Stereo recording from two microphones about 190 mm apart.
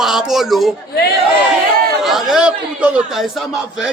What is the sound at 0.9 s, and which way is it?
Speech, 55° left (ahead or behind).